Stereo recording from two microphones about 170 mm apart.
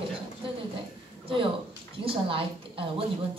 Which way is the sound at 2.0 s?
30° right (ahead or behind).